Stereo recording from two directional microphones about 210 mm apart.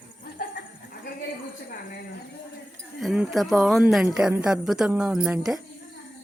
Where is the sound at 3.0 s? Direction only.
Centre (ahead or behind).